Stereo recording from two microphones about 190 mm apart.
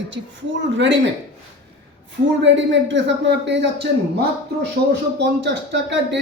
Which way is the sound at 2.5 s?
75° right (ahead or behind).